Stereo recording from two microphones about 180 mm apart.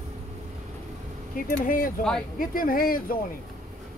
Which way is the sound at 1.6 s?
50° left (ahead or behind).